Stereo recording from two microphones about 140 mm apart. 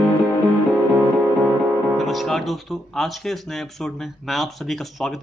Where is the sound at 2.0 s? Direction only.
Centre (ahead or behind).